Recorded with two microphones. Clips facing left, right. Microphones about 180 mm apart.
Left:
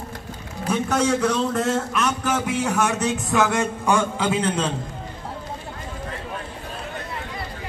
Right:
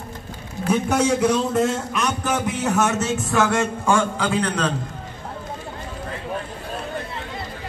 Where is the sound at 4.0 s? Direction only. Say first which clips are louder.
Right 1 dB; 25° left (ahead or behind).